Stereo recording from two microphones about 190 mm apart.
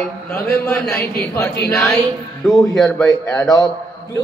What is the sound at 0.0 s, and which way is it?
A man's voice, centre (ahead or behind).